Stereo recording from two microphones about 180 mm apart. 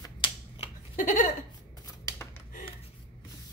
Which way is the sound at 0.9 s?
50° left (ahead or behind).